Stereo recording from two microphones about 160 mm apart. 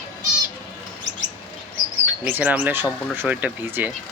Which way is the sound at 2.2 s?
10° right (ahead or behind).